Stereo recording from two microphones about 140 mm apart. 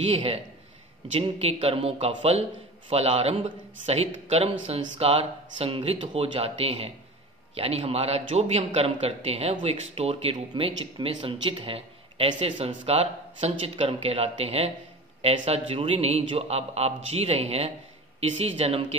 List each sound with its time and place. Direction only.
0.1 s a man's voice: 40° right (ahead or behind)
10.5 s speech: 35° right (ahead or behind)